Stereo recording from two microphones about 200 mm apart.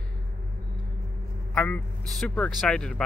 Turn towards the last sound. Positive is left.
turn(degrees=5)  # may be behind; listen again after turning